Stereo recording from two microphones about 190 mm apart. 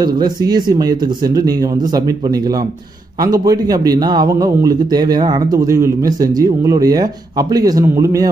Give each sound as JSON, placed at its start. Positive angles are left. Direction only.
{"t": 0.0, "sound": "a man's voice", "side_deg": -20}